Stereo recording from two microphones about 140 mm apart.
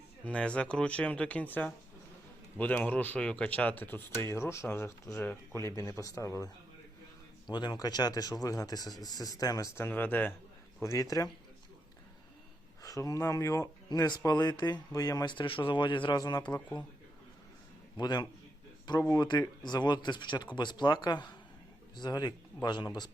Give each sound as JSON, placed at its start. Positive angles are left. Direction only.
{"t": 0.3, "sound": "speech", "side_deg": 5}
{"t": 7.5, "sound": "speech", "side_deg": 30}
{"t": 12.8, "sound": "speech", "side_deg": 25}
{"t": 17.9, "sound": "a man's voice", "side_deg": 30}